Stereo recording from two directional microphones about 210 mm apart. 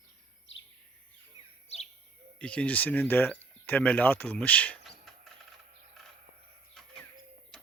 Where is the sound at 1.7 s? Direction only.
30° left (ahead or behind).